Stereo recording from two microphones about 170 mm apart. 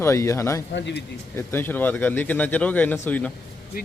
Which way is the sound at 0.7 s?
90° left.